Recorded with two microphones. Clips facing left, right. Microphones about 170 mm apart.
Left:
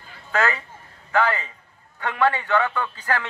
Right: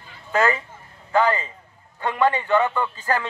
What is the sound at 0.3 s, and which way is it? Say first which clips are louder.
A man's voice: right 3 dB; 15° right (ahead or behind).